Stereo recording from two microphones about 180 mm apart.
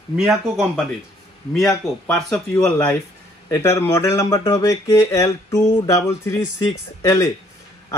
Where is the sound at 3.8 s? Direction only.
15° left (ahead or behind).